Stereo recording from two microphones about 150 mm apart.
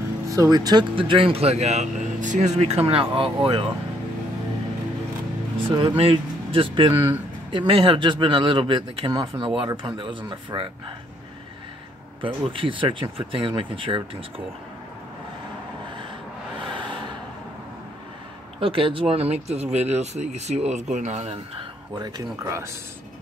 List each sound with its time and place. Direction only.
0.3 s speech: 25° right (ahead or behind)
5.6 s speech: 35° right (ahead or behind)
12.2 s speech: 35° right (ahead or behind)
18.6 s speech: 35° right (ahead or behind)
21.9 s speech: 25° right (ahead or behind)